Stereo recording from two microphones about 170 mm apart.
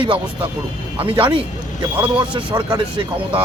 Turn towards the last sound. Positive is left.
turn(degrees=-25)  # may be behind; listen again after turning